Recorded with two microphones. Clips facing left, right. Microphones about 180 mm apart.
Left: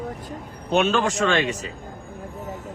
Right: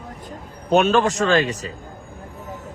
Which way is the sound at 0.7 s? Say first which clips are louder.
Right 4 dB; 40° right (ahead or behind).